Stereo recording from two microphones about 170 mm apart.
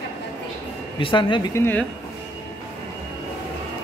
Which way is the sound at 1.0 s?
30° left (ahead or behind).